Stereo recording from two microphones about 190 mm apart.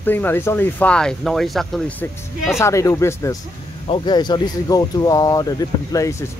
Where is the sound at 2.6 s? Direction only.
15° left (ahead or behind).